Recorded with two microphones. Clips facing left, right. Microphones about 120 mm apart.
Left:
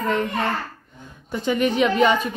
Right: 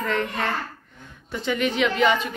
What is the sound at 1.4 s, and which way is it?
Speech, 40° left (ahead or behind).